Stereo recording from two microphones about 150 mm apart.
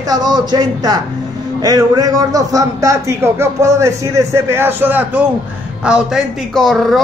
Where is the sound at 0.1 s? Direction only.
30° right (ahead or behind).